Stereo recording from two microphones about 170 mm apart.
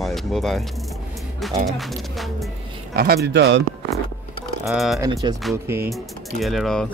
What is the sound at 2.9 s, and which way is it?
Speech, 65° right (ahead or behind).